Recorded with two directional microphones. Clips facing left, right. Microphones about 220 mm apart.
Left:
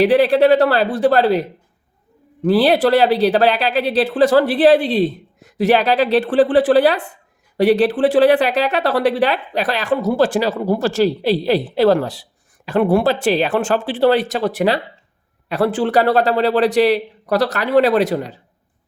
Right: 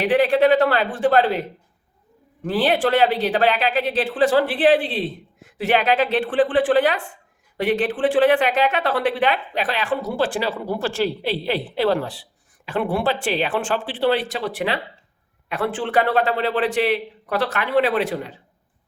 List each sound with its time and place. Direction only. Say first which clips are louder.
0.0 s speech: left 4 dB; 35° left (ahead or behind)
2.5 s speech: left 6 dB; 35° left (ahead or behind)